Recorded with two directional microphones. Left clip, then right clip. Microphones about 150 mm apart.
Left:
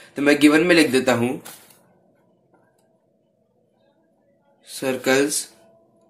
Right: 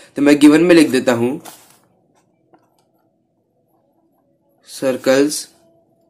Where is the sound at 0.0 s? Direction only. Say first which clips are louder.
Right 5 dB; 35° right (ahead or behind); by 1.4 s 15° right (ahead or behind).